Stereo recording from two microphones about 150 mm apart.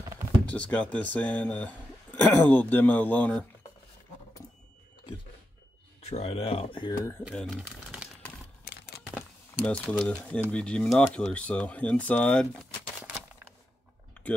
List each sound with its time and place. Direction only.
0.5 s speech: 10° left (ahead or behind)
6.0 s speech: 45° left (ahead or behind)
7.2 s speech: centre (ahead or behind)
9.7 s speech: 5° left (ahead or behind)
14.2 s typing: 10° left (ahead or behind)